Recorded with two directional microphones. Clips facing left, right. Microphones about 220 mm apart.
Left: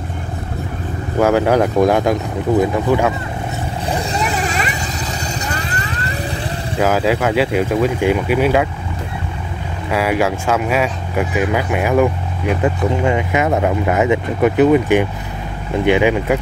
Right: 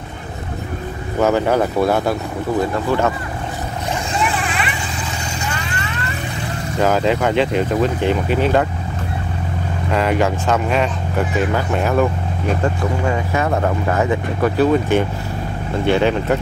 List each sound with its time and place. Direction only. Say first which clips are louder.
1.2 s speech: left 2 dB; 10° left (ahead or behind)
3.9 s vehicle: left 1 dB; 40° left (ahead or behind)
6.8 s speech: left 1 dB; 5° left (ahead or behind)
9.8 s speech: left 1 dB; 10° left (ahead or behind)